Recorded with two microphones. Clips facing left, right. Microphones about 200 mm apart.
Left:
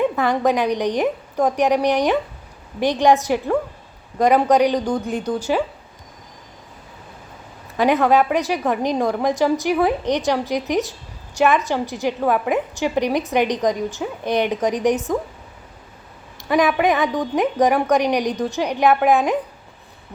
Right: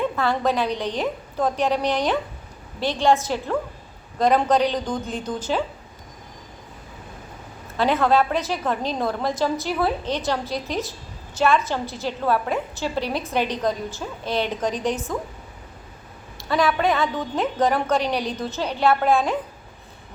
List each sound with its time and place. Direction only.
0.0 s a woman's voice: 15° left (ahead or behind)
7.8 s a woman's voice: 15° left (ahead or behind)
16.4 s a woman's voice: 20° left (ahead or behind)